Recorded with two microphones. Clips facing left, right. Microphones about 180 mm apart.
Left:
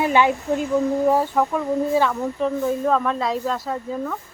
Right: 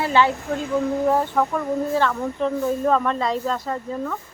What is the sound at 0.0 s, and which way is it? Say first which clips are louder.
Speech: left 1 dB; 15° left (ahead or behind).